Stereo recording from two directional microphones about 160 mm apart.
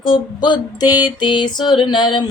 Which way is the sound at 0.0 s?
30° left (ahead or behind).